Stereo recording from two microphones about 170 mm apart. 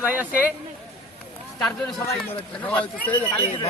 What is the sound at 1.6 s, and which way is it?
A man's voice, 5° left (ahead or behind).